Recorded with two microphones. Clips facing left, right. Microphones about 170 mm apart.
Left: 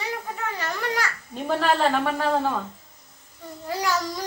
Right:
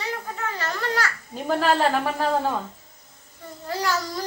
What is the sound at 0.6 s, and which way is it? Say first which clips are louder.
Babbling: right 1 dB; 15° left (ahead or behind).